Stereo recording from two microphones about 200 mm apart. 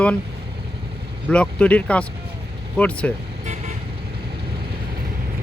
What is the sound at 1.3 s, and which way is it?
Speech, 5° left (ahead or behind).